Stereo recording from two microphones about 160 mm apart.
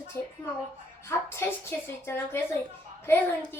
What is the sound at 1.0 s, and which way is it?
A woman's voice, 15° left (ahead or behind).